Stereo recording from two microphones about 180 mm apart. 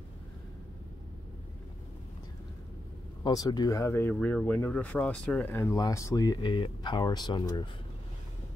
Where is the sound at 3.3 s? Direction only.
20° left (ahead or behind).